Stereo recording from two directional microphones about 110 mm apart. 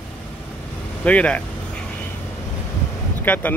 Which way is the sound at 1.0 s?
10° left (ahead or behind).